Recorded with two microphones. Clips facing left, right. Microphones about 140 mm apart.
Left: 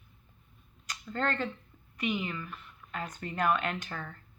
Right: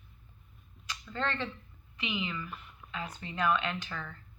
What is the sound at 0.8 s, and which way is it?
Speech, 45° left (ahead or behind).